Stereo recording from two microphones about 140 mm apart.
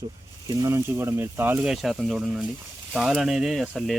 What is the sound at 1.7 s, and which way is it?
Speech, centre (ahead or behind).